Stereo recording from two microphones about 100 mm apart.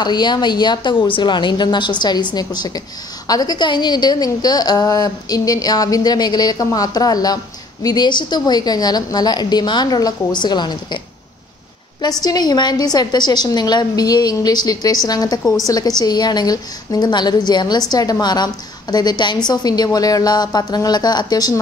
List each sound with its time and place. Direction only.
0.0 s a woman's voice: 45° left (ahead or behind)
12.0 s a woman's voice: 40° left (ahead or behind)